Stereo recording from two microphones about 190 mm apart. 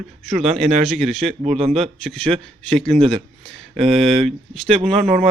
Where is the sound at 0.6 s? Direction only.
Centre (ahead or behind).